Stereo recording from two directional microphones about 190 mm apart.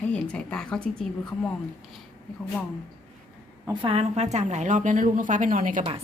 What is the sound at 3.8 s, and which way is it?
A woman's voice, 30° right (ahead or behind).